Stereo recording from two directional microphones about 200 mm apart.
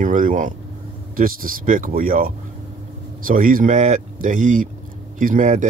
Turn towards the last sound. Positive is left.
turn(degrees=-40)  # may be behind; listen again after turning